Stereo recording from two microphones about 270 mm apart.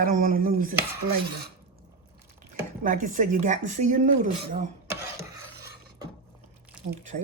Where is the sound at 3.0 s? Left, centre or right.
Right.